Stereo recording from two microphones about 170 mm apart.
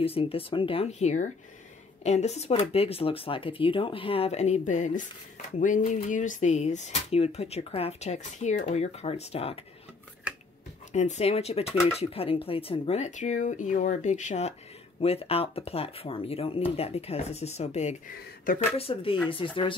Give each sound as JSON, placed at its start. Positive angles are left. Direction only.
{"t": 0.0, "sound": "speech", "side_deg": 35}
{"t": 10.9, "sound": "speech", "side_deg": 45}
{"t": 18.5, "sound": "speech", "side_deg": 55}
{"t": 18.8, "sound": "speech", "side_deg": 35}